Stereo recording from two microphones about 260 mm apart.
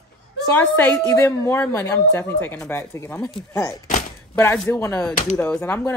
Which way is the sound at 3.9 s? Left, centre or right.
Left.